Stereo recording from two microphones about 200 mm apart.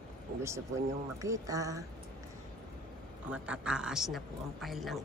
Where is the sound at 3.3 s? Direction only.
5° right (ahead or behind).